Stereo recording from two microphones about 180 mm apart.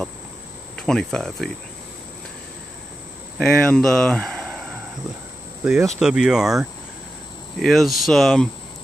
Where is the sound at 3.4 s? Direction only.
5° left (ahead or behind).